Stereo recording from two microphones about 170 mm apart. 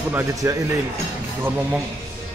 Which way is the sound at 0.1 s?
15° right (ahead or behind).